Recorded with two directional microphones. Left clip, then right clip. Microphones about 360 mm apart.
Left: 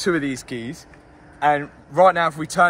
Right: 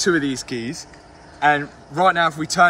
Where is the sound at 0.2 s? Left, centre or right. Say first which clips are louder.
Right 2 dB; centre.